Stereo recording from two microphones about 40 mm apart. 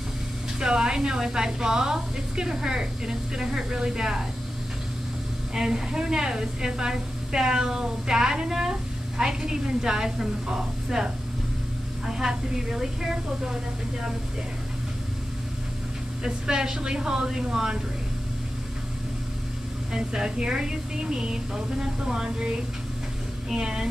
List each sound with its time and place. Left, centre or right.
0.6 s a woman's voice: centre
5.5 s a woman's voice: centre
12.1 s a woman's voice: centre
16.3 s speech: centre
19.9 s a woman's voice: centre
23.5 s a woman's voice: centre